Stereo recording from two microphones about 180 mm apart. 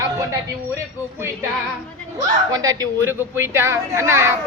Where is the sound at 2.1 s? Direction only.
20° right (ahead or behind).